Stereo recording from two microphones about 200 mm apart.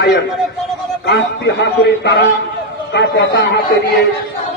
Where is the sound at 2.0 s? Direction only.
60° left (ahead or behind).